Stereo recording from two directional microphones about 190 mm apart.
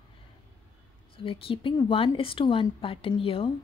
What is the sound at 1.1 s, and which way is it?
A woman's voice, 30° left (ahead or behind).